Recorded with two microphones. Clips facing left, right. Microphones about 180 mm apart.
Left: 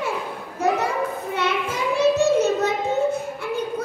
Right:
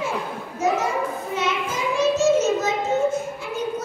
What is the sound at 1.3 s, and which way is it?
Child singing, 60° left (ahead or behind).